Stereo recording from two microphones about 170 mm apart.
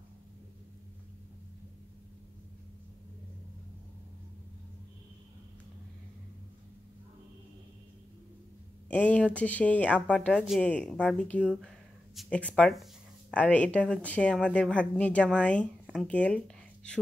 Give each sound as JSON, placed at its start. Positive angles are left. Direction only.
{"t": 8.9, "sound": "speech", "side_deg": 10}